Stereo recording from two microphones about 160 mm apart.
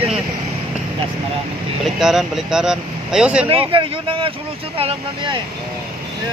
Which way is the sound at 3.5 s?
35° right (ahead or behind).